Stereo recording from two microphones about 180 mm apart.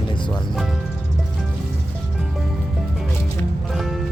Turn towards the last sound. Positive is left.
turn(degrees=0)  # may be behind; listen again after turning